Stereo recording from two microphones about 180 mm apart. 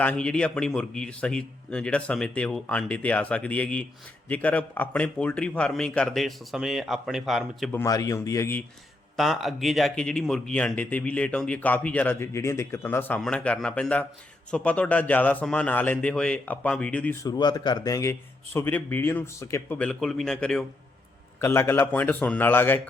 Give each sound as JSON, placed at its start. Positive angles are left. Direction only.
{"t": 0.0, "sound": "a man's voice", "side_deg": 5}
{"t": 7.7, "sound": "speech", "side_deg": 15}
{"t": 9.1, "sound": "speech", "side_deg": 0}
{"t": 17.2, "sound": "speech", "side_deg": 20}
{"t": 21.4, "sound": "speech", "side_deg": 15}